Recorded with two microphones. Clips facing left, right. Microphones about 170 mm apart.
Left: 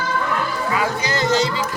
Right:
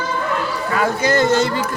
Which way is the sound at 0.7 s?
50° right (ahead or behind).